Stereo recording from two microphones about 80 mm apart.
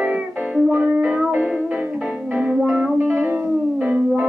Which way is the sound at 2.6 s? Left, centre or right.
Centre.